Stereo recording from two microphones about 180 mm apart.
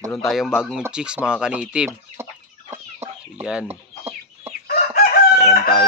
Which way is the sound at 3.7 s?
35° right (ahead or behind).